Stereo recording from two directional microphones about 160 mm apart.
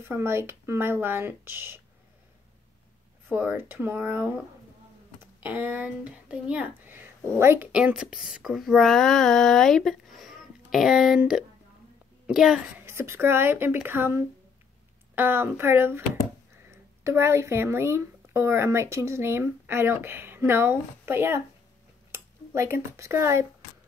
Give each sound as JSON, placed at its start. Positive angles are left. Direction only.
{"t": 0.0, "sound": "speech", "side_deg": -15}
{"t": 3.3, "sound": "speech", "side_deg": -10}
{"t": 12.8, "sound": "speech", "side_deg": -15}
{"t": 17.0, "sound": "speech", "side_deg": -15}